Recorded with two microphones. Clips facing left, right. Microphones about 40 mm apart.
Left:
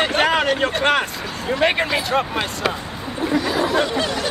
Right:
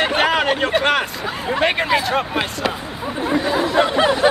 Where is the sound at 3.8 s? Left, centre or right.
Right.